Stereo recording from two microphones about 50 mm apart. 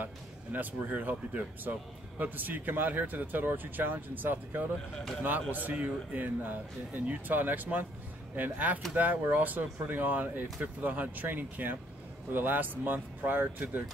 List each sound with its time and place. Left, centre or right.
0.0 s speech: right